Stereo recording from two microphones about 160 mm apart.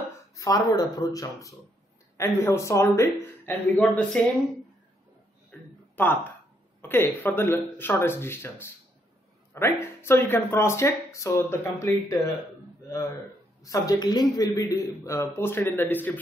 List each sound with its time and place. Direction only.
0.4 s a man's voice: 20° left (ahead or behind)
5.5 s a sound: 15° left (ahead or behind)
6.8 s speech: 15° left (ahead or behind)
13.6 s a man's voice: 20° left (ahead or behind)